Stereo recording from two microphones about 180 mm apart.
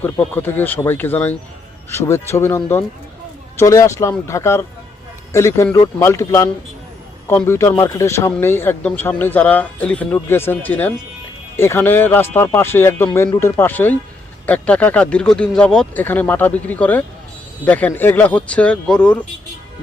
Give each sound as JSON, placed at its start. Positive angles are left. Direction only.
{"t": 0.0, "sound": "speech", "side_deg": 10}